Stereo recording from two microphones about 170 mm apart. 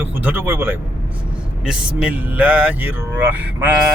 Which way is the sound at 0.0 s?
10° right (ahead or behind).